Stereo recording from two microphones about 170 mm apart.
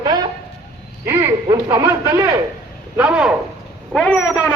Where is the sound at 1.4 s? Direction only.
20° right (ahead or behind).